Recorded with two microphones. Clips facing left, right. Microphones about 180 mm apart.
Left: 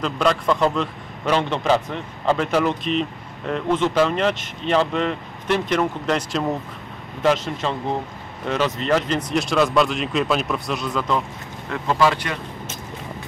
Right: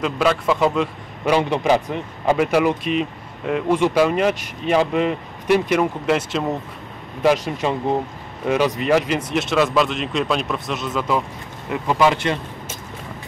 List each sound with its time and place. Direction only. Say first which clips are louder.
0.0 s a man's voice: right 1 dB; 5° right (ahead or behind)
11.7 s a man's voice: right 2 dB; 15° right (ahead or behind)